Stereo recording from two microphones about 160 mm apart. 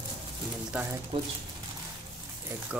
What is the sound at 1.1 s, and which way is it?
Speech, 30° right (ahead or behind).